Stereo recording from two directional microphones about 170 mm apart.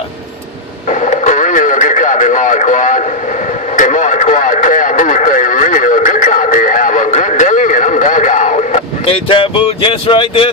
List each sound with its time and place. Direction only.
1.0 s radio: 45° left (ahead or behind)